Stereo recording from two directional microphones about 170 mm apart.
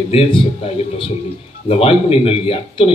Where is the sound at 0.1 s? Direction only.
35° left (ahead or behind).